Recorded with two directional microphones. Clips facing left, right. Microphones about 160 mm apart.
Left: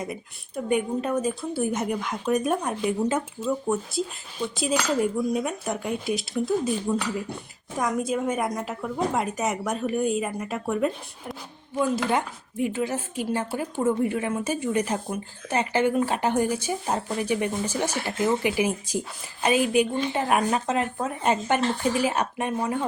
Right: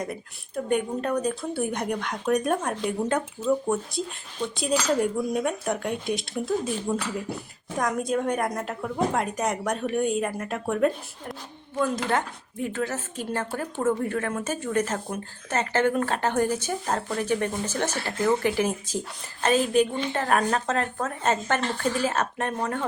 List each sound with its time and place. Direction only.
0.0 s speech: 5° left (ahead or behind)
11.8 s speech: 10° left (ahead or behind)